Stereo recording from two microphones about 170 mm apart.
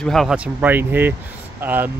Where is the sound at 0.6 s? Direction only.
10° right (ahead or behind).